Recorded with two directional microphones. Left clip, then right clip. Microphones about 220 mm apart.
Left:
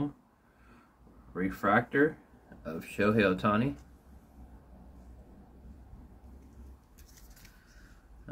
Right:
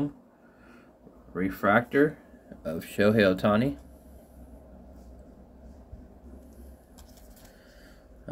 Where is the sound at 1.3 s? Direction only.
20° right (ahead or behind).